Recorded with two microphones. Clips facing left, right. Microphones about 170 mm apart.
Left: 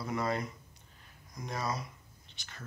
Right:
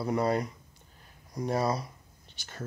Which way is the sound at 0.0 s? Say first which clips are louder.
Right 6 dB; 35° right (ahead or behind).